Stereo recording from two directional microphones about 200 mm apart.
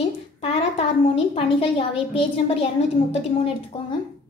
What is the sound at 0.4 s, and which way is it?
A woman's voice, 30° left (ahead or behind).